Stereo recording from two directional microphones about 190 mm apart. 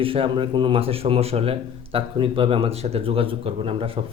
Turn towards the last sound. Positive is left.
turn(degrees=-30)  # may be behind; listen again after turning